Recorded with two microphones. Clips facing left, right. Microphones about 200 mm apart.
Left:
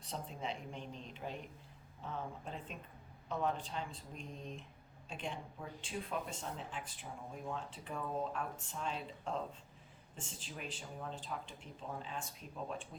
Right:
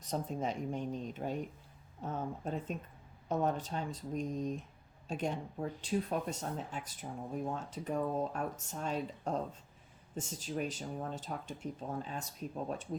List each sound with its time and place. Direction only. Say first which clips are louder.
0.0 s speech: right 7 dB; 45° right (ahead or behind)